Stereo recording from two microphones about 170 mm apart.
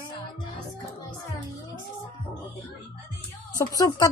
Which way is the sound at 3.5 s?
20° left (ahead or behind).